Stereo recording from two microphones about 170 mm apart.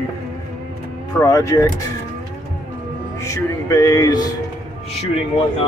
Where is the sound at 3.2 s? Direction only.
20° left (ahead or behind).